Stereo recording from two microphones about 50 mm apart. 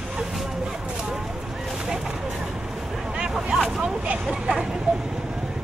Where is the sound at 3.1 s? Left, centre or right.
Centre.